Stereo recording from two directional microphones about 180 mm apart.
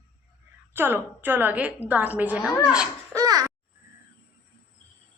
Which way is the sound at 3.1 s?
20° right (ahead or behind).